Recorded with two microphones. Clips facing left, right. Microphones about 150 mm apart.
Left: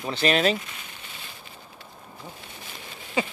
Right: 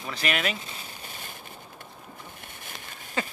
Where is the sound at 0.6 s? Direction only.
35° right (ahead or behind).